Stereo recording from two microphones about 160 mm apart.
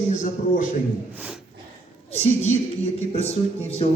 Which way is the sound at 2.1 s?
45° left (ahead or behind).